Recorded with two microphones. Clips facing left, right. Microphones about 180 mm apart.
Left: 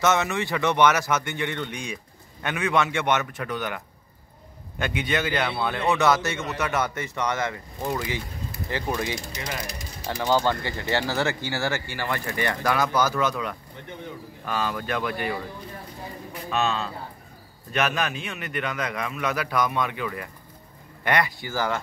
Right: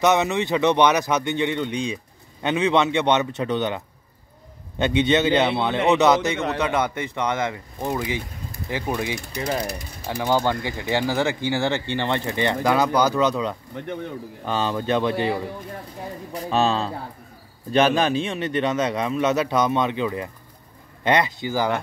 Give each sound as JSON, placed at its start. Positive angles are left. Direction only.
{"t": 0.0, "sound": "a man's voice", "side_deg": -15}